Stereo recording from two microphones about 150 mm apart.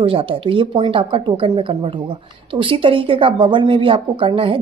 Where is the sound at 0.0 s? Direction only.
35° right (ahead or behind).